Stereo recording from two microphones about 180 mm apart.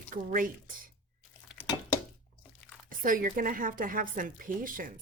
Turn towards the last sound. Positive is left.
turn(degrees=-50)  # may be behind; listen again after turning